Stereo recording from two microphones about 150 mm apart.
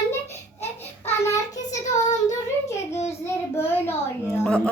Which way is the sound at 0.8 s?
15° left (ahead or behind).